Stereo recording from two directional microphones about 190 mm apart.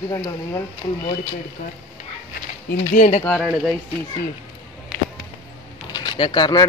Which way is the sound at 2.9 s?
40° left (ahead or behind).